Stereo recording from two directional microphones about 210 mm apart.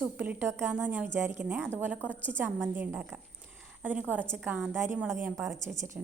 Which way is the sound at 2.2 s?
10° right (ahead or behind).